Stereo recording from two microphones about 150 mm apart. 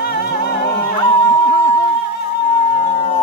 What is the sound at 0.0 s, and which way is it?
Music, 90° left.